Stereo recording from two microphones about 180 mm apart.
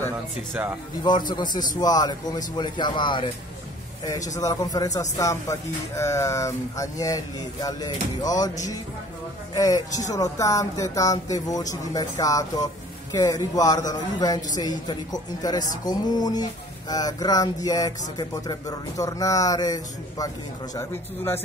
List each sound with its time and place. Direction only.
1.3 s speech: 25° left (ahead or behind)
4.4 s speech: 20° left (ahead or behind)
9.5 s a man's voice: 20° left (ahead or behind)